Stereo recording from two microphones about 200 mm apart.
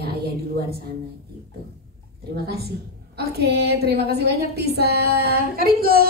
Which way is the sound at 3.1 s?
55° right (ahead or behind).